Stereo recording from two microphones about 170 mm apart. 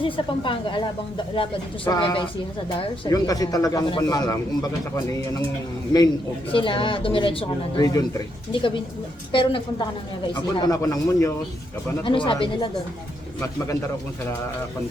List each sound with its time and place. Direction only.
0.0 s speech: 30° left (ahead or behind)